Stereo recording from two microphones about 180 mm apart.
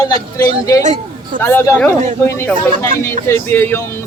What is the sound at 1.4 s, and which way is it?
Speech, 10° left (ahead or behind).